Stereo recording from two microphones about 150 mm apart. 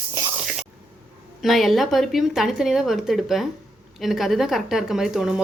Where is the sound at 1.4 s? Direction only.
Centre (ahead or behind).